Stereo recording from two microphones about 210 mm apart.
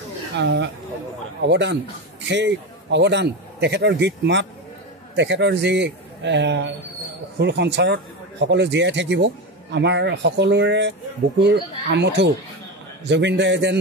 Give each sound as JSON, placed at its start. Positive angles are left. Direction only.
{"t": 0.3, "sound": "a man's voice", "side_deg": -55}